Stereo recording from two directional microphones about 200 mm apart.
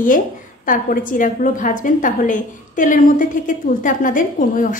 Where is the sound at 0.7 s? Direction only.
40° left (ahead or behind).